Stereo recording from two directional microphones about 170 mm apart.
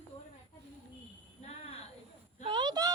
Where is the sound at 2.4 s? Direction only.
25° right (ahead or behind).